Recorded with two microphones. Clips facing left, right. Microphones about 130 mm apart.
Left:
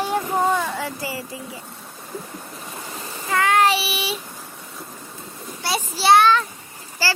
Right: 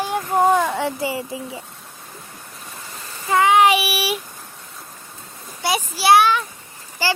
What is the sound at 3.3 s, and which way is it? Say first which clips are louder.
Child singing: right 4 dB; 20° right (ahead or behind).